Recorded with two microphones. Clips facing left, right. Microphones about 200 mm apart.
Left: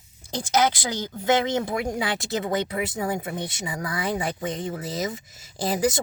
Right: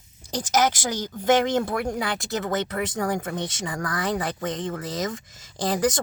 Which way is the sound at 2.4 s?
10° left (ahead or behind).